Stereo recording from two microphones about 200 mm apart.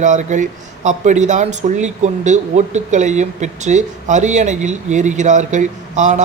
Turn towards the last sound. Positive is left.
turn(degrees=-35)  # may be behind; listen again after turning